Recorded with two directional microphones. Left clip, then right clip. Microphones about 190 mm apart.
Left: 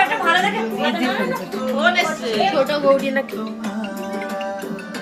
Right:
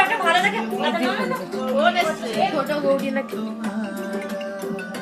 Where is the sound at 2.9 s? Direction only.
40° left (ahead or behind).